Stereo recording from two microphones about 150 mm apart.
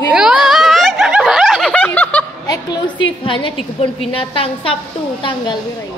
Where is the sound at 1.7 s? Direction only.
10° left (ahead or behind).